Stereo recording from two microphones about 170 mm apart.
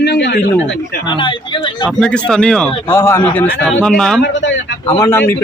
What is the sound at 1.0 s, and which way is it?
Speech, 25° left (ahead or behind).